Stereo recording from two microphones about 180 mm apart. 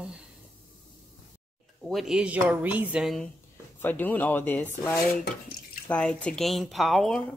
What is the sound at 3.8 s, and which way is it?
Speech, 10° left (ahead or behind).